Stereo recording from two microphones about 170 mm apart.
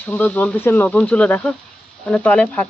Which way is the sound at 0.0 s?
10° left (ahead or behind).